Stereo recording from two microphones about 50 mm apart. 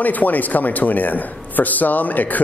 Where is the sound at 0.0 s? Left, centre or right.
Left.